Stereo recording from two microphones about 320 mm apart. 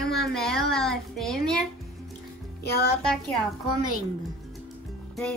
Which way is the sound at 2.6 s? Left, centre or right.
Left.